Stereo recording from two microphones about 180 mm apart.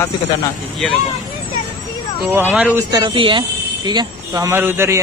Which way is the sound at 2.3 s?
10° right (ahead or behind).